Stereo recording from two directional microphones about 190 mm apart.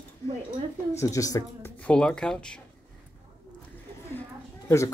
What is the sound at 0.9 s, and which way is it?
Speech, 15° left (ahead or behind).